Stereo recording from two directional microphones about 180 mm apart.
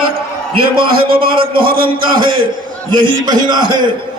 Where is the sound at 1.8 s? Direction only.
25° right (ahead or behind).